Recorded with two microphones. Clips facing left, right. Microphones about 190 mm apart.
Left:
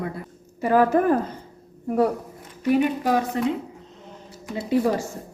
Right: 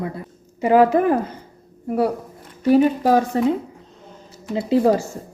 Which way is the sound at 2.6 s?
35° right (ahead or behind).